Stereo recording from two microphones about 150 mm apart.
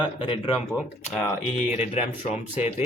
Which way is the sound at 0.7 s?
Centre (ahead or behind).